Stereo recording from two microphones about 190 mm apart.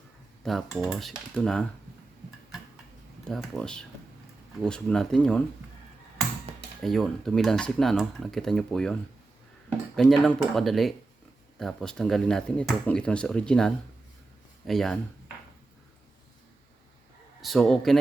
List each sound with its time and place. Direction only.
0.4 s speech: centre (ahead or behind)
3.2 s speech: 5° left (ahead or behind)
6.5 s computer keyboard: 35° right (ahead or behind)
6.8 s speech: centre (ahead or behind)
17.4 s speech: centre (ahead or behind)